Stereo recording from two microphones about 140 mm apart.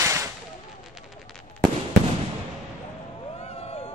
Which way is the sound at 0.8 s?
5° right (ahead or behind).